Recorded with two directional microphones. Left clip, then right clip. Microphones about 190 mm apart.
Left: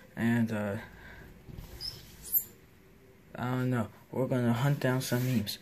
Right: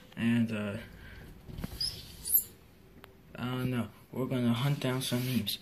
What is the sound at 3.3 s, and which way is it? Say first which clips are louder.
Speech: left 3 dB; 50° left (ahead or behind).